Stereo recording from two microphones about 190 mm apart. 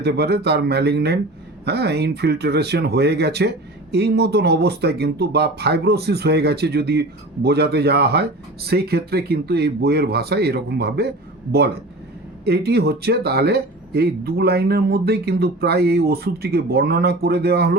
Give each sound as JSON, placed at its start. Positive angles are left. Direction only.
{"t": 0.0, "sound": "speech", "side_deg": -60}
{"t": 12.5, "sound": "speech", "side_deg": -55}